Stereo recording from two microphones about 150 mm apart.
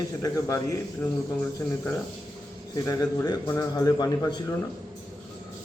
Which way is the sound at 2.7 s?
20° left (ahead or behind).